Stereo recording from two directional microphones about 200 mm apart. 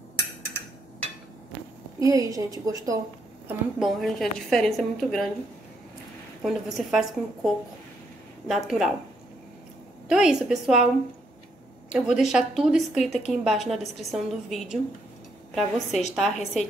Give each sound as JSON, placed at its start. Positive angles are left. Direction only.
{"t": 2.0, "sound": "a woman's voice", "side_deg": -15}
{"t": 3.4, "sound": "a woman's voice", "side_deg": 0}
{"t": 6.4, "sound": "a woman's voice", "side_deg": 0}
{"t": 10.0, "sound": "a woman's voice", "side_deg": -5}
{"t": 11.9, "sound": "a woman's voice", "side_deg": 0}
{"t": 15.9, "sound": "a woman's voice", "side_deg": 35}
{"t": 16.2, "sound": "a woman's voice", "side_deg": 0}